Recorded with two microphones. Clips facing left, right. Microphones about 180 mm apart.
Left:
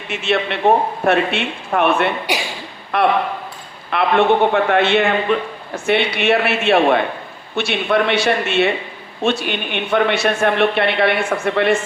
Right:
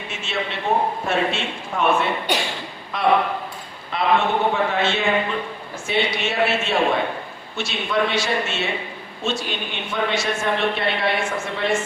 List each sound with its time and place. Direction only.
0.1 s a man's voice: 65° left (ahead or behind)